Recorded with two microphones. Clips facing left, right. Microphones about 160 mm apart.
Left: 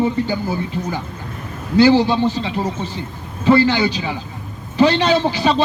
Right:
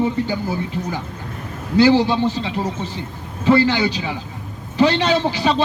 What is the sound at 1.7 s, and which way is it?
A man's voice, 35° left (ahead or behind).